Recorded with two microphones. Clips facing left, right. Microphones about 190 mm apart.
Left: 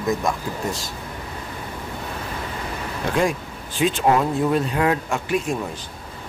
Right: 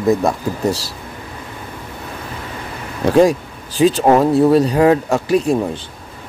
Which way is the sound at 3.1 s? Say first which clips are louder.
Right 10 dB; 35° right (ahead or behind).